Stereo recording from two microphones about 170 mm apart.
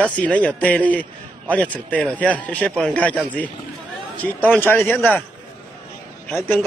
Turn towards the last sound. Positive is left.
turn(degrees=10)  # may be behind; listen again after turning